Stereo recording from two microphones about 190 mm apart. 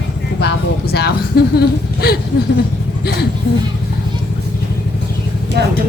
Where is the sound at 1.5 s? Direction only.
55° left (ahead or behind).